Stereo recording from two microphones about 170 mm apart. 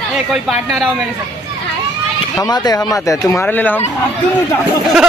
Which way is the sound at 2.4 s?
25° left (ahead or behind).